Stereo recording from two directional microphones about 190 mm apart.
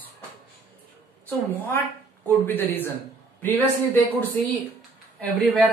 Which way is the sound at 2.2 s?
10° left (ahead or behind).